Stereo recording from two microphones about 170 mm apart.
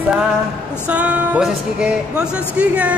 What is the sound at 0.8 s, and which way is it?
A man's voice, 10° right (ahead or behind).